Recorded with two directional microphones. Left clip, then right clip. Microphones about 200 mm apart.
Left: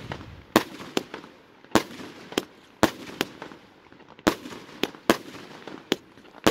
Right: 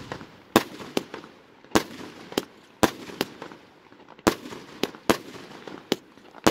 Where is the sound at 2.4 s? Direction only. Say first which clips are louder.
Even; centre (ahead or behind).